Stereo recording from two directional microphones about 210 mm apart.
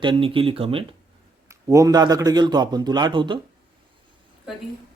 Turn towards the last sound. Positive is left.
turn(degrees=-20)  # may be behind; listen again after turning